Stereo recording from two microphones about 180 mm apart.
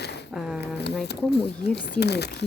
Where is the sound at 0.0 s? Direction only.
70° left (ahead or behind).